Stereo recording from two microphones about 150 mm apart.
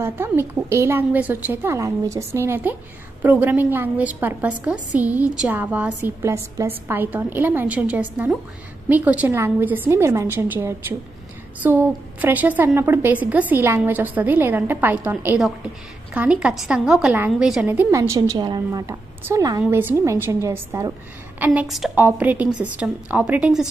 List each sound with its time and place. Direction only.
0.0 s a woman's voice: 15° right (ahead or behind)
21.5 s a woman's voice: centre (ahead or behind)
21.9 s a woman's voice: 10° right (ahead or behind)